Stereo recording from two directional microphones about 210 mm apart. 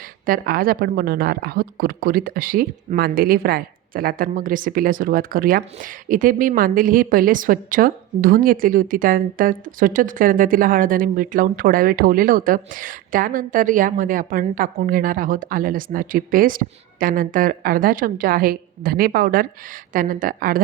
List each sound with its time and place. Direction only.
0.3 s a woman's voice: 45° right (ahead or behind)